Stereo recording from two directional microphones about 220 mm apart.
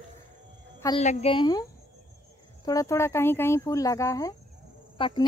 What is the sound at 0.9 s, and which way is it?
Speech, 30° left (ahead or behind).